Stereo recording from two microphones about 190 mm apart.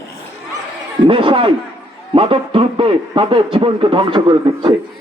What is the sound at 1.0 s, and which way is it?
Speech, 30° right (ahead or behind).